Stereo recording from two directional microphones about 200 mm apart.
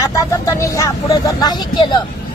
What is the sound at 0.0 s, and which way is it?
Speech, 15° left (ahead or behind).